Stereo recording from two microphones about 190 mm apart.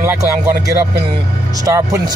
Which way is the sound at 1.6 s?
15° right (ahead or behind).